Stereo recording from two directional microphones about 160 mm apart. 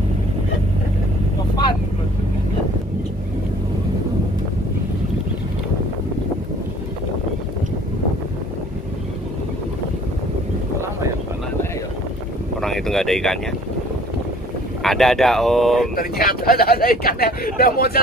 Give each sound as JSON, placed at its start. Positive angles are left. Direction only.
{"t": 12.5, "sound": "a sound", "side_deg": 0}
{"t": 14.8, "sound": "speech", "side_deg": 0}
{"t": 16.0, "sound": "speech", "side_deg": 70}